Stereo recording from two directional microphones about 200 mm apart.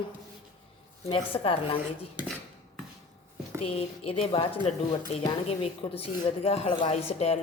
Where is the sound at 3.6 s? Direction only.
30° left (ahead or behind).